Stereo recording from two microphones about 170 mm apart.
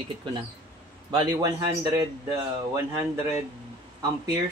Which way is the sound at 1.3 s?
20° right (ahead or behind).